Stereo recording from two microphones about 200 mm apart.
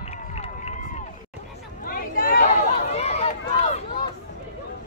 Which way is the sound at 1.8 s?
45° left (ahead or behind).